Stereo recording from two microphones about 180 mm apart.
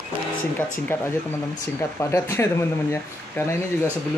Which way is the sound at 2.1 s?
15° left (ahead or behind).